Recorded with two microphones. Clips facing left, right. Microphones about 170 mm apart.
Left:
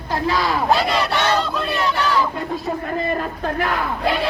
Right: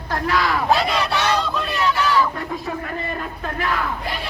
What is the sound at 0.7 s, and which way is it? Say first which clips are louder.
Speech: left 1 dB; centre (ahead or behind).